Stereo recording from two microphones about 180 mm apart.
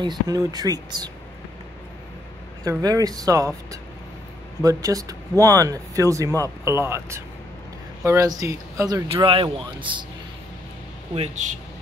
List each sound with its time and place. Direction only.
0.0 s speech: 20° right (ahead or behind)
2.6 s speech: 20° right (ahead or behind)
9.1 s speech: 30° right (ahead or behind)
11.1 s speech: 40° right (ahead or behind)